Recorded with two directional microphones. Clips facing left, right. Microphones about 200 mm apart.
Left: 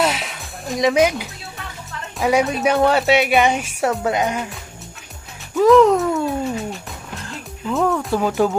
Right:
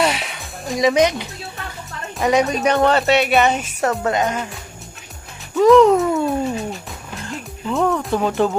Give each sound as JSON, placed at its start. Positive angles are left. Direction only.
{"t": 0.0, "sound": "music", "side_deg": 0}
{"t": 2.1, "sound": "speech", "side_deg": 5}
{"t": 5.6, "sound": "speech", "side_deg": 0}